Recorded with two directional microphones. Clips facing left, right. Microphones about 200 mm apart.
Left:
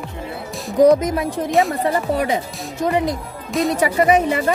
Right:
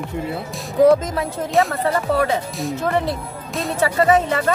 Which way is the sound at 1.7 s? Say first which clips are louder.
Even; 15° left (ahead or behind).